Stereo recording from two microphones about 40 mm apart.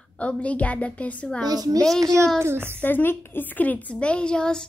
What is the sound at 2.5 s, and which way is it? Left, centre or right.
Speech, right.